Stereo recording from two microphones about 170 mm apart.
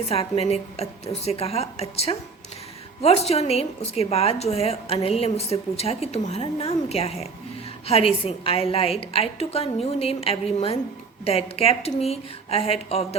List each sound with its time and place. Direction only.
0.1 s a woman's voice: 35° left (ahead or behind)